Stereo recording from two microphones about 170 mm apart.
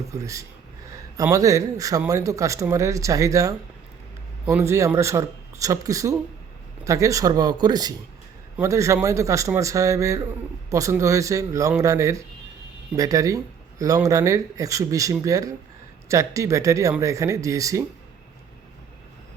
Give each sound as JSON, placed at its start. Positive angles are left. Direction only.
{"t": 0.1, "sound": "speech", "side_deg": -20}